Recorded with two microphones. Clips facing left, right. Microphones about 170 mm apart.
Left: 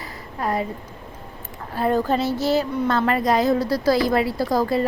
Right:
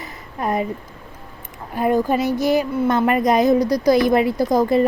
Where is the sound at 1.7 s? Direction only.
15° right (ahead or behind).